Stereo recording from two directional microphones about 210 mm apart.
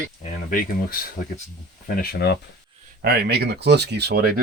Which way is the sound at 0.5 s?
45° left (ahead or behind).